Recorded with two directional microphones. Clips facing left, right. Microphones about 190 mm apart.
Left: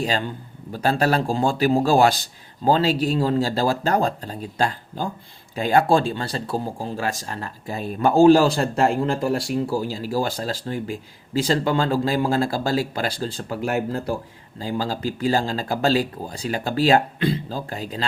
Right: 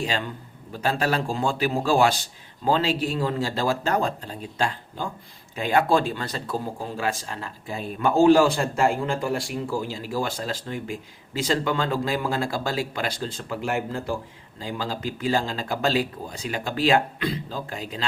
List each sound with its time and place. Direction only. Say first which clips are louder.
0.0 s a man's voice: left 3 dB; 40° left (ahead or behind)